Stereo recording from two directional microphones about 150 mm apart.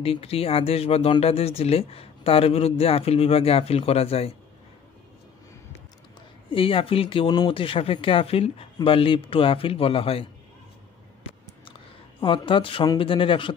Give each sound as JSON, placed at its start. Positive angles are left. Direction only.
{"t": 0.0, "sound": "speech", "side_deg": 40}
{"t": 6.5, "sound": "speech", "side_deg": 35}
{"t": 12.2, "sound": "speech", "side_deg": 35}